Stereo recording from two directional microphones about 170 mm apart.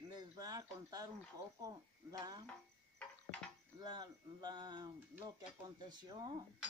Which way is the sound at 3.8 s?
25° right (ahead or behind).